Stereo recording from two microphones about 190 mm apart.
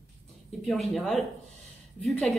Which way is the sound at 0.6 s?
Centre (ahead or behind).